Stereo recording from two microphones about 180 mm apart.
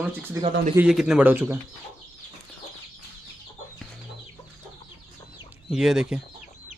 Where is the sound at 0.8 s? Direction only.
5° right (ahead or behind).